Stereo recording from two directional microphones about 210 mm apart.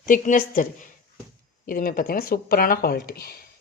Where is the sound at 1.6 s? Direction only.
40° left (ahead or behind).